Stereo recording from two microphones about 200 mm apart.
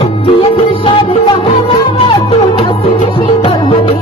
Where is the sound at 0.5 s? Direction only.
25° left (ahead or behind).